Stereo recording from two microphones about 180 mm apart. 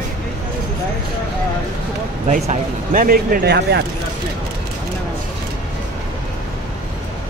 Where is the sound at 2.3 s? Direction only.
45° right (ahead or behind); by 3.8 s 65° right (ahead or behind).